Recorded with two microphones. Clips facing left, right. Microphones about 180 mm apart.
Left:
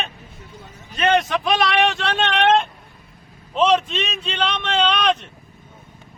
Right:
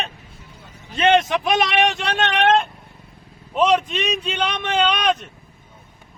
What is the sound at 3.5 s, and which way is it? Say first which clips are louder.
Speech: even; 10° right (ahead or behind).